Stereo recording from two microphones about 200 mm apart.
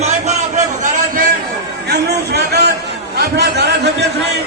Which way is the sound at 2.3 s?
55° right (ahead or behind).